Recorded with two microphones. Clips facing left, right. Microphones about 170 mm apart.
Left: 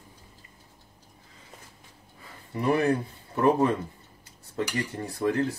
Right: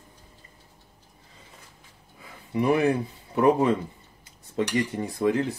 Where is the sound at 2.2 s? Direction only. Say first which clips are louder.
Right 3 dB; 15° right (ahead or behind).